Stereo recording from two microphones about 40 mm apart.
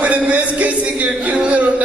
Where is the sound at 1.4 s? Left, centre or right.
Right.